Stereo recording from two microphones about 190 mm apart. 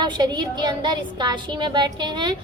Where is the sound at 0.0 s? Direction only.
20° right (ahead or behind).